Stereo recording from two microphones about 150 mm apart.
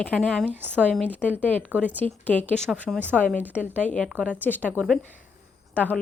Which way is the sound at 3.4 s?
10° right (ahead or behind).